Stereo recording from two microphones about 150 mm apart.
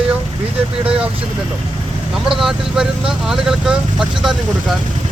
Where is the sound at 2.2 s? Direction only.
5° right (ahead or behind).